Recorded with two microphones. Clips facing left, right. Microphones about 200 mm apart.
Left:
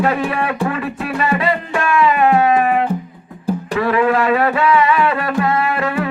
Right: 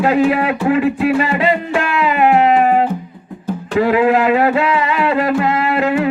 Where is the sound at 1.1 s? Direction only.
30° right (ahead or behind).